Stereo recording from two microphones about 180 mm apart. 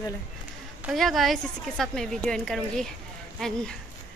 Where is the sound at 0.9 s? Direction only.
Centre (ahead or behind).